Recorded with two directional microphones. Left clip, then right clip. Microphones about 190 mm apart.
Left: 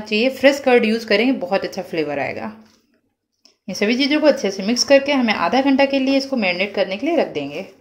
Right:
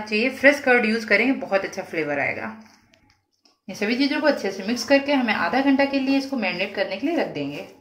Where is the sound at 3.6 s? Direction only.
45° left (ahead or behind).